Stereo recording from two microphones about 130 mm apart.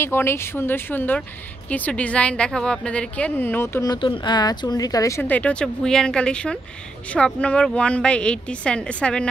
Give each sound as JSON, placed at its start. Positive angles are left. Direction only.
{"t": 0.0, "sound": "a woman's voice", "side_deg": 20}
{"t": 3.8, "sound": "a woman's voice", "side_deg": 35}